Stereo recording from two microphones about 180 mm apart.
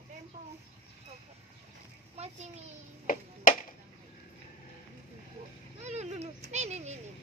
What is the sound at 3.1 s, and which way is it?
Music, 50° left (ahead or behind).